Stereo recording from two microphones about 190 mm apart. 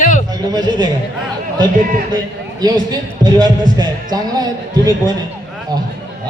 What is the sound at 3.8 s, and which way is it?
Speech, 20° right (ahead or behind).